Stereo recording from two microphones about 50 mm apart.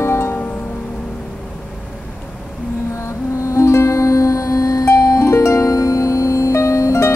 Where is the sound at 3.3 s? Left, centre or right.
Left.